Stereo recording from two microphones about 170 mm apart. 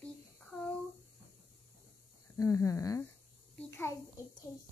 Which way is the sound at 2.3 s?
20° left (ahead or behind).